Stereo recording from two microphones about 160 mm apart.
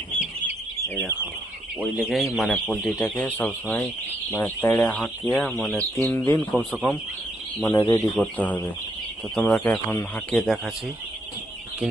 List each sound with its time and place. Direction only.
0.2 s chicken: 10° right (ahead or behind)
2.0 s speech: centre (ahead or behind)
7.6 s speech: 20° left (ahead or behind)
8.1 s speech: 10° left (ahead or behind)
10.3 s speech: centre (ahead or behind)